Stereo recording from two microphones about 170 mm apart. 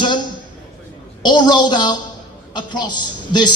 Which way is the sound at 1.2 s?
25° left (ahead or behind).